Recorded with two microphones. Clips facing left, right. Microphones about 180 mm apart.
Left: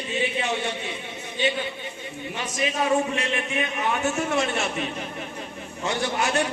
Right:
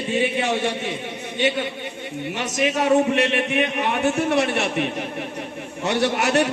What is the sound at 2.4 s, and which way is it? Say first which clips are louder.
A man's voice: right 4 dB; 75° right (ahead or behind).